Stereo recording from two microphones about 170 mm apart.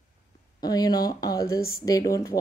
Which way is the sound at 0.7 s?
25° left (ahead or behind).